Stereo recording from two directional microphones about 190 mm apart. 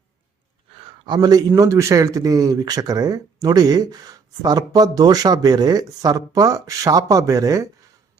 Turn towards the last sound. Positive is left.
turn(degrees=-20)  # may be behind; listen again after turning